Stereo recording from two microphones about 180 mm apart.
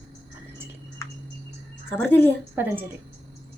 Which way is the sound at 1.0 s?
15° left (ahead or behind).